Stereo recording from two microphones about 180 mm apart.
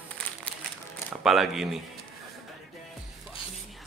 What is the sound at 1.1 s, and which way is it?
Speech, centre (ahead or behind).